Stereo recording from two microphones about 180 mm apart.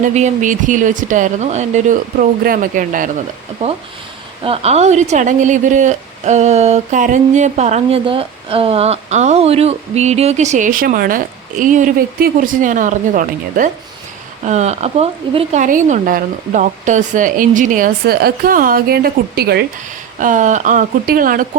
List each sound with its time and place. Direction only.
0.0 s speech: 40° right (ahead or behind)
4.4 s speech: 35° right (ahead or behind)
15.6 s speech: 45° right (ahead or behind); by 19.6 s 65° right (ahead or behind)
20.1 s speech: 45° right (ahead or behind)